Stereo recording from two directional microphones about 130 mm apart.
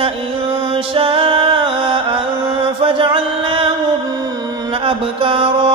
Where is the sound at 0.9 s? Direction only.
40° right (ahead or behind).